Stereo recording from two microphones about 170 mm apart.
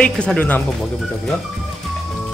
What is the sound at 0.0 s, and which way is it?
Speech, 5° left (ahead or behind).